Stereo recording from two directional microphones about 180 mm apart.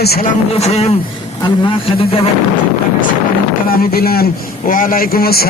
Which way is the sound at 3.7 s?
60° left (ahead or behind).